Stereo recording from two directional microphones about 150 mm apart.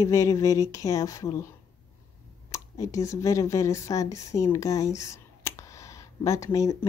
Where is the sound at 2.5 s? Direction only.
20° left (ahead or behind).